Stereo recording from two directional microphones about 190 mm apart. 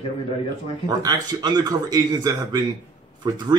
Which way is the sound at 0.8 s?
20° right (ahead or behind).